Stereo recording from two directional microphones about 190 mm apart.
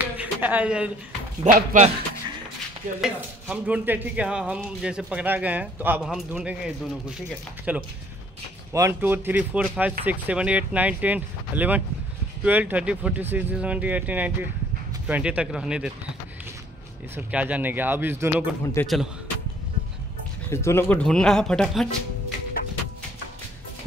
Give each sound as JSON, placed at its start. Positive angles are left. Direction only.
{"t": 0.0, "sound": "a sound", "side_deg": -10}
{"t": 1.4, "sound": "speech", "side_deg": -40}
{"t": 3.0, "sound": "speech", "side_deg": -5}
{"t": 17.1, "sound": "speech", "side_deg": -10}
{"t": 18.8, "sound": "a man's voice", "side_deg": 10}
{"t": 20.5, "sound": "speech", "side_deg": 10}